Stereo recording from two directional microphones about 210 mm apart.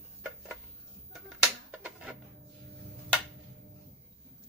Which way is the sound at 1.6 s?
5° right (ahead or behind).